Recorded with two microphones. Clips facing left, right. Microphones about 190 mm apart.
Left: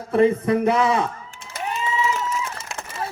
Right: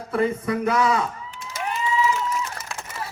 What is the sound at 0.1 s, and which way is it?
Speech, 25° left (ahead or behind).